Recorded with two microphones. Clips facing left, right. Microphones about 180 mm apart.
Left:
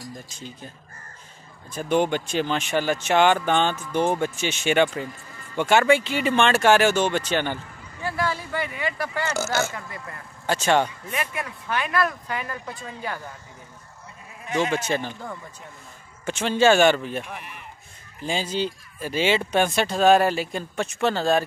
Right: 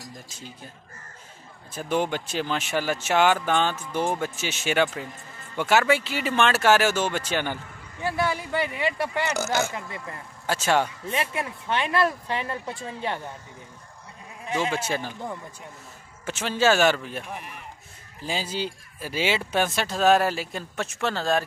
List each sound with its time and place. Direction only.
0.3 s speech: 5° right (ahead or behind)
1.7 s speech: 5° right (ahead or behind)
8.0 s speech: 20° right (ahead or behind)
10.4 s speech: 5° right (ahead or behind)
11.1 s speech: 30° right (ahead or behind)
14.7 s speech: 5° right (ahead or behind)
16.3 s speech: 5° right (ahead or behind)